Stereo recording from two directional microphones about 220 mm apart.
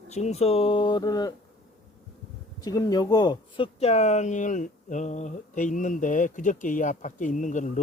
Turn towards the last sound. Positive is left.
turn(degrees=35)  # may be behind; listen again after turning